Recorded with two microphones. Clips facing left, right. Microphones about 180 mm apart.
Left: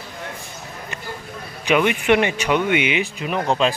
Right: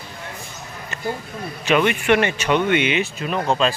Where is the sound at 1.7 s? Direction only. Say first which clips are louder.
Even; 15° left (ahead or behind).